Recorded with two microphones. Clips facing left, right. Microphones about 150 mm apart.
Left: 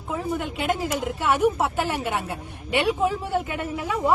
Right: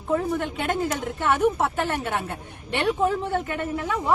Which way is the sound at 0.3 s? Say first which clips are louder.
Even; 5° left (ahead or behind).